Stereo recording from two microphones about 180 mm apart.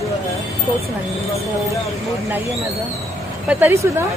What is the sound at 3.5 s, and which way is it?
Speech, 10° right (ahead or behind).